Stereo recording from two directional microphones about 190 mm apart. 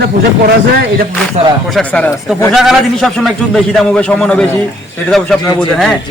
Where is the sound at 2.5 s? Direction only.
Centre (ahead or behind).